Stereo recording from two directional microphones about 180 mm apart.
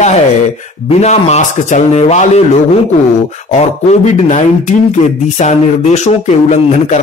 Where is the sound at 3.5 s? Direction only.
40° left (ahead or behind).